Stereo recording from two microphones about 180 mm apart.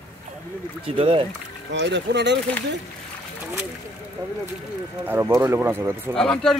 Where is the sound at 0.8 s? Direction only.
30° right (ahead or behind).